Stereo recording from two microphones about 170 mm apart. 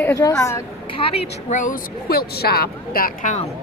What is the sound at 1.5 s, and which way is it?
Speech, 50° left (ahead or behind).